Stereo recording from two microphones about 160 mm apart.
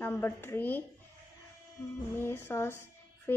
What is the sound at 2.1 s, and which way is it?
Speech, 15° left (ahead or behind).